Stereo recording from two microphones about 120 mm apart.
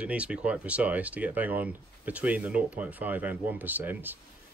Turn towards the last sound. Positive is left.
turn(degrees=-15)  # may be behind; listen again after turning